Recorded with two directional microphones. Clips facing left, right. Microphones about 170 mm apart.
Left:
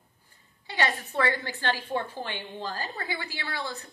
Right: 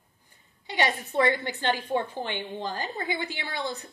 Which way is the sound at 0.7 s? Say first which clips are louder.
Right 2 dB; 15° right (ahead or behind).